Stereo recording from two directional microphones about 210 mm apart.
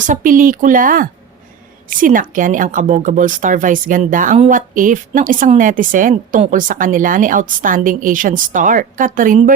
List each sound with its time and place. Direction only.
0.0 s speech: 40° right (ahead or behind)